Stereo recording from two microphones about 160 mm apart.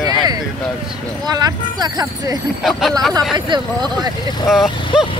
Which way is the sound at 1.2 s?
25° right (ahead or behind).